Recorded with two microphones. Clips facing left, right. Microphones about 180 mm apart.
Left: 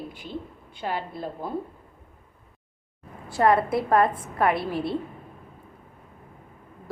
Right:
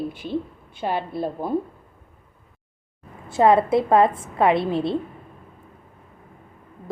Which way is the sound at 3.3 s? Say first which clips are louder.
Right 4 dB; 25° right (ahead or behind).